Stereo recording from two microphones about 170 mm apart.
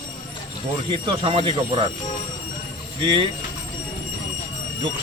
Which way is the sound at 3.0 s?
30° right (ahead or behind).